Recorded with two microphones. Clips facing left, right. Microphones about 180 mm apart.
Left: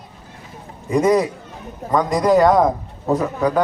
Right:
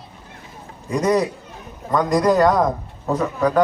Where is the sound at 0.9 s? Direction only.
10° left (ahead or behind).